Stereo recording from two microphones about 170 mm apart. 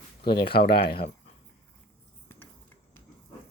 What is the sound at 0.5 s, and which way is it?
Speech, 70° left (ahead or behind).